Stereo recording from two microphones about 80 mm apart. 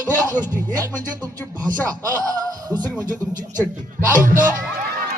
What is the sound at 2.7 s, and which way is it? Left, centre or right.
Speech, right.